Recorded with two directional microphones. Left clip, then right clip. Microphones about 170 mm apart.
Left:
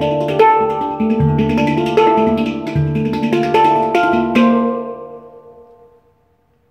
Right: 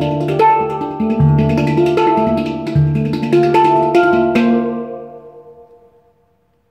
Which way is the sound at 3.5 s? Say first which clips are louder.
Left 2 dB; 55° right (ahead or behind).